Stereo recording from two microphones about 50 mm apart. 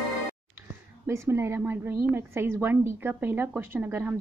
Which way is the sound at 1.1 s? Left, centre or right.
Right.